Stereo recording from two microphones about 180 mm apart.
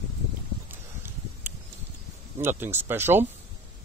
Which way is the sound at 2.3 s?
15° right (ahead or behind).